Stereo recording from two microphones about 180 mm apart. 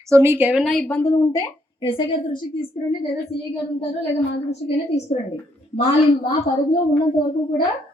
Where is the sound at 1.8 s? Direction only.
30° left (ahead or behind).